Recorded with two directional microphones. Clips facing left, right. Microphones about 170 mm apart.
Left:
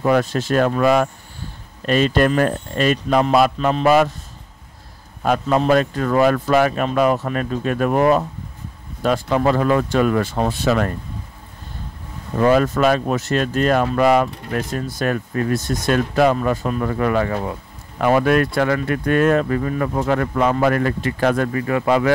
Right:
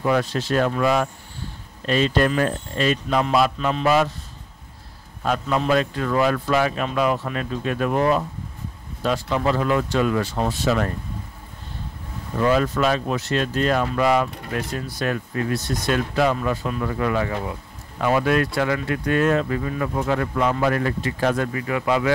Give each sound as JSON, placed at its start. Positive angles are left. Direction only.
{"t": 0.0, "sound": "speech", "side_deg": 50}
{"t": 5.2, "sound": "speech", "side_deg": 50}
{"t": 12.4, "sound": "speech", "side_deg": 50}
{"t": 21.5, "sound": "speech", "side_deg": 45}